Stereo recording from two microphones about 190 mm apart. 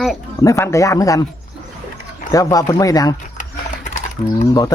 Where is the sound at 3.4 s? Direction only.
40° left (ahead or behind).